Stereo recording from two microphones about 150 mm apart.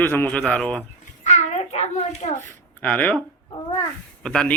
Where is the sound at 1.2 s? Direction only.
45° left (ahead or behind).